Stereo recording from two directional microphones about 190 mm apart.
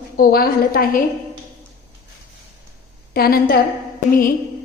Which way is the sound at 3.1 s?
55° left (ahead or behind).